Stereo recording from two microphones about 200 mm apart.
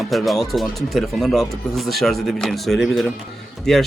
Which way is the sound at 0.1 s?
Centre (ahead or behind).